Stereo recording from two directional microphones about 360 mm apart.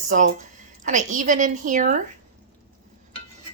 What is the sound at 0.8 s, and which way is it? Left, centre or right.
A woman's voice, right.